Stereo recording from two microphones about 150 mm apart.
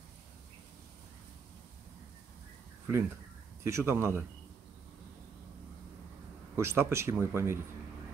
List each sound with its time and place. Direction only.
3.6 s speech: 20° right (ahead or behind)
6.5 s speech: 15° right (ahead or behind)